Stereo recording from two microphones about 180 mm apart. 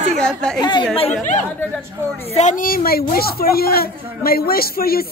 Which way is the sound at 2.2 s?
40° left (ahead or behind).